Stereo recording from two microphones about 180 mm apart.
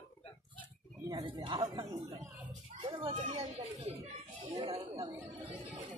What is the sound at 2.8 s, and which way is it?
Children playing, 30° right (ahead or behind).